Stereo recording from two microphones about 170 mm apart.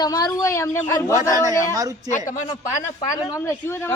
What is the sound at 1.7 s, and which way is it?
Speech, 20° right (ahead or behind).